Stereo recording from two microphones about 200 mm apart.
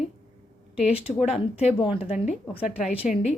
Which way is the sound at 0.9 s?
30° left (ahead or behind).